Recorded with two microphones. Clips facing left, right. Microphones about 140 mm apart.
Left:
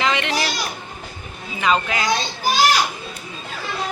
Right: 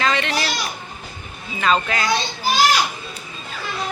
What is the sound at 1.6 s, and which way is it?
Speech, 15° left (ahead or behind).